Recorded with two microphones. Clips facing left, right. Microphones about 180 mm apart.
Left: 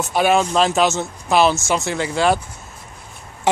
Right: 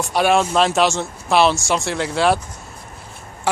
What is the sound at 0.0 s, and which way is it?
Speech, centre (ahead or behind).